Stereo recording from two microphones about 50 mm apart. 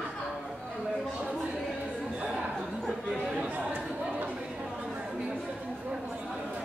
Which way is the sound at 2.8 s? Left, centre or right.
Centre.